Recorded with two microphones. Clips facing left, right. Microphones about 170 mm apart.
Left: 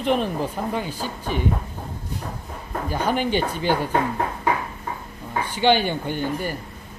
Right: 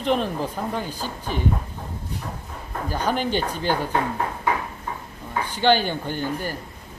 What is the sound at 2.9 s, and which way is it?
Speech, 10° left (ahead or behind).